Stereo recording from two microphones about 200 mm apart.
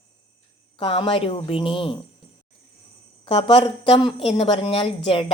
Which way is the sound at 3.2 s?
25° left (ahead or behind).